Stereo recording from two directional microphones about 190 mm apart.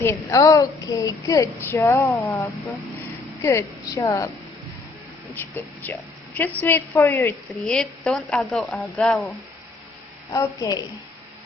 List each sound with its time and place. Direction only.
0.0 s a woman's voice: 15° left (ahead or behind)
5.3 s a woman's voice: 10° left (ahead or behind)
7.6 s a woman's voice: centre (ahead or behind)
10.3 s a woman's voice: 20° left (ahead or behind)